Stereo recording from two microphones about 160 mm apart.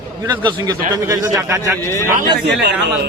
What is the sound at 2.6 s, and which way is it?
Speech, 90° right.